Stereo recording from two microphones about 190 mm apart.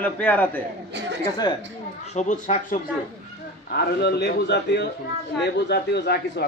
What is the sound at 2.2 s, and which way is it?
Speech, 40° left (ahead or behind).